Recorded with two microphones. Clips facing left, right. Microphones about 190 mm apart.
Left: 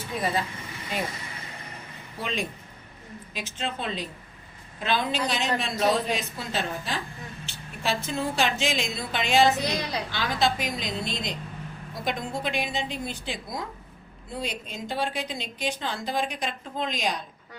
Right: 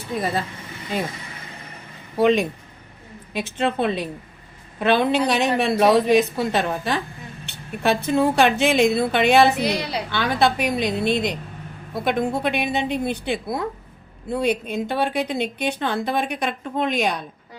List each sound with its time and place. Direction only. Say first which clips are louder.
2.1 s a woman's voice: right 14 dB; 65° right (ahead or behind)